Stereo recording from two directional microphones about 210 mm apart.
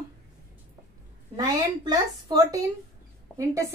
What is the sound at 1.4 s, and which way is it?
A woman's voice, 20° right (ahead or behind).